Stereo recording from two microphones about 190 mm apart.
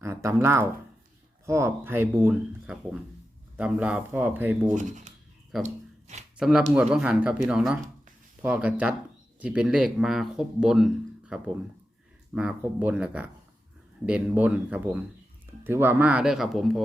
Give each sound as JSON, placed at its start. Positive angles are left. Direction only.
{"t": 0.0, "sound": "speech", "side_deg": -15}
{"t": 4.7, "sound": "speech", "side_deg": -40}
{"t": 5.6, "sound": "a sound", "side_deg": -35}
{"t": 6.3, "sound": "speech", "side_deg": -5}